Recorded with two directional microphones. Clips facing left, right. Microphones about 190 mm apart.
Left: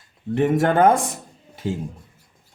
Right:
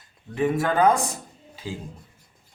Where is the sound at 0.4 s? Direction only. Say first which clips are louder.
Left 4 dB; 80° left.